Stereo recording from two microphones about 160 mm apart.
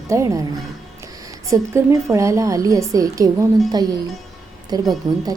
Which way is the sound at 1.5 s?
20° right (ahead or behind).